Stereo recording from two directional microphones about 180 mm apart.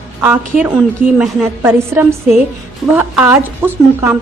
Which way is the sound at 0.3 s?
10° right (ahead or behind).